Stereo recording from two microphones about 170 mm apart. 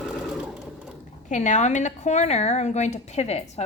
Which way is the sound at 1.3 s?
45° left (ahead or behind).